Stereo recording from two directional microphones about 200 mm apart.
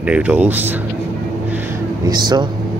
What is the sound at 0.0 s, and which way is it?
Speech, 5° right (ahead or behind).